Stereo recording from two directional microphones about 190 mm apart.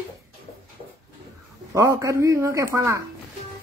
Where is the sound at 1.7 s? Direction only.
15° right (ahead or behind).